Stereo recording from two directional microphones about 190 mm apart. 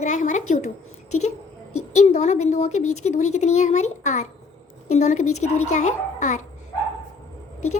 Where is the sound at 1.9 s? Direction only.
35° left (ahead or behind).